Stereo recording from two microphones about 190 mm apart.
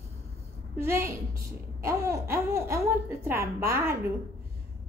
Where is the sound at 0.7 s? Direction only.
15° right (ahead or behind).